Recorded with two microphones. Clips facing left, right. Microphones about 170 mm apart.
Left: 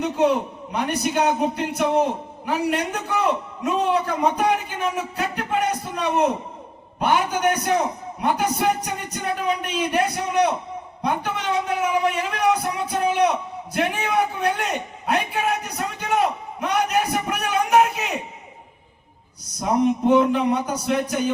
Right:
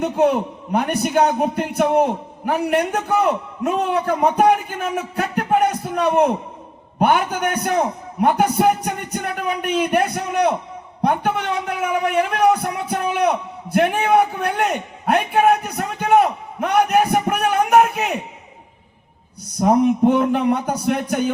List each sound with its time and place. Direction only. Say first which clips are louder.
0.0 s a man's voice: right 3 dB; 55° right (ahead or behind)
19.5 s a man's voice: right 5 dB; 55° right (ahead or behind)